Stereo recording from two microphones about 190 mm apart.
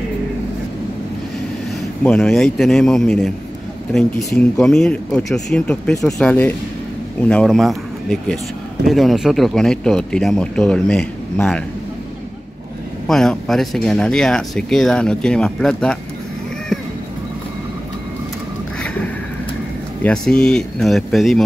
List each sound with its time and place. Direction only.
2.0 s speech: 5° left (ahead or behind)
4.2 s speech: 15° left (ahead or behind)
4.6 s speech: 5° left (ahead or behind)
13.0 s speech: 5° left (ahead or behind)
20.0 s speech: 5° left (ahead or behind)